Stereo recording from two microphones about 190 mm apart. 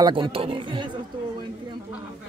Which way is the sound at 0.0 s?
25° right (ahead or behind).